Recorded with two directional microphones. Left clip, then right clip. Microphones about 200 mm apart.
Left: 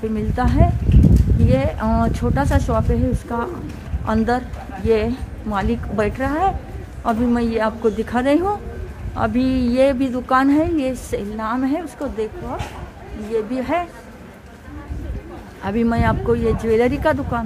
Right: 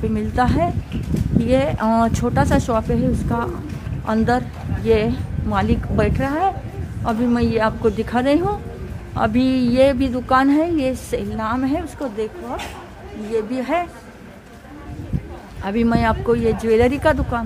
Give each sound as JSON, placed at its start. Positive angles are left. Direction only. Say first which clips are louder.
{"t": 0.1, "sound": "a woman's voice", "louder": "right 3 dB", "side_deg": -20}
{"t": 15.6, "sound": "a woman's voice", "louder": "right 1 dB", "side_deg": -10}